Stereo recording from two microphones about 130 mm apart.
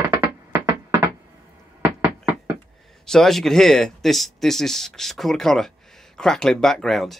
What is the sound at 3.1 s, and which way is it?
Speech, 5° left (ahead or behind).